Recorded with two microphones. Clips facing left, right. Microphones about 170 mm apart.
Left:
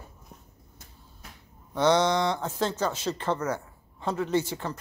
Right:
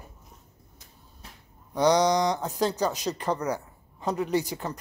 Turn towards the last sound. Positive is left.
turn(degrees=-15)  # may be behind; listen again after turning